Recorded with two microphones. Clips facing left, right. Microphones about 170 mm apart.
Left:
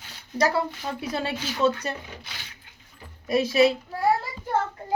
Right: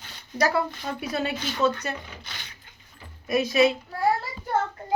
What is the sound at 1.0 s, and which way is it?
Speech, 30° left (ahead or behind).